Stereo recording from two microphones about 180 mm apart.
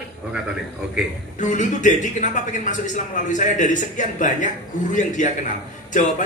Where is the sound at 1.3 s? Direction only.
45° left (ahead or behind).